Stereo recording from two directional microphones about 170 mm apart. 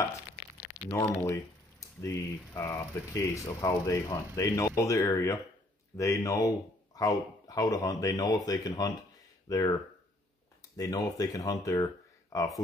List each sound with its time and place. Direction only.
0.8 s speech: 15° left (ahead or behind)
10.8 s speech: 20° left (ahead or behind)